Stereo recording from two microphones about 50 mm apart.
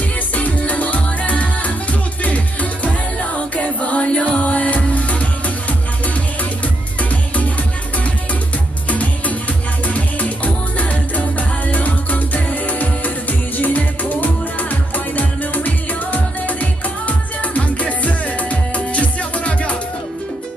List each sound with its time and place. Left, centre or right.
0.4 s music: left
8.8 s music: left